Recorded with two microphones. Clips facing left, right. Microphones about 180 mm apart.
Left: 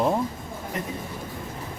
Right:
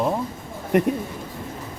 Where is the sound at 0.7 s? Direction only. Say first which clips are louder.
Right 14 dB; 65° right (ahead or behind).